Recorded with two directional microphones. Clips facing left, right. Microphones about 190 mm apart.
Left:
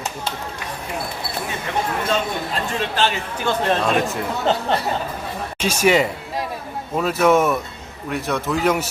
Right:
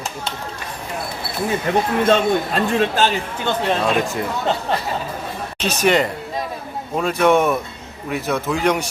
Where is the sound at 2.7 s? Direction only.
45° right (ahead or behind).